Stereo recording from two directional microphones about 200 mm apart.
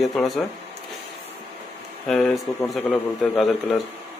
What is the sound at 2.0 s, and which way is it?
A man's voice, centre (ahead or behind).